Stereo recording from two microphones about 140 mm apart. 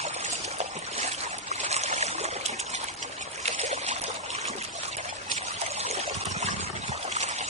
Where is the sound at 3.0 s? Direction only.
55° right (ahead or behind).